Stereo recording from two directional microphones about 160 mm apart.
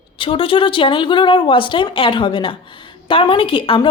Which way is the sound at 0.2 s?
35° left (ahead or behind).